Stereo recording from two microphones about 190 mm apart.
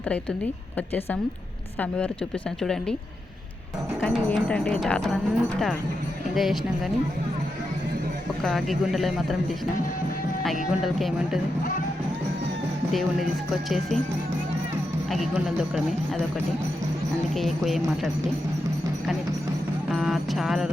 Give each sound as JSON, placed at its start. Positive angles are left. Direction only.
{"t": 2.6, "sound": "speech", "side_deg": 0}
{"t": 4.0, "sound": "speech", "side_deg": 5}
{"t": 8.4, "sound": "speech", "side_deg": 0}
{"t": 10.4, "sound": "speech", "side_deg": 0}
{"t": 12.9, "sound": "speech", "side_deg": 0}
{"t": 15.1, "sound": "speech", "side_deg": 0}
{"t": 17.3, "sound": "speech", "side_deg": 0}
{"t": 19.9, "sound": "music", "side_deg": 0}